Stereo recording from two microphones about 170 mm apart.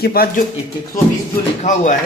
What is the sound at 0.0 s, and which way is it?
Speech, 65° left (ahead or behind).